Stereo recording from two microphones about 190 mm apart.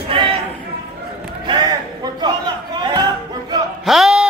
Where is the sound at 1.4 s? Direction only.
25° right (ahead or behind).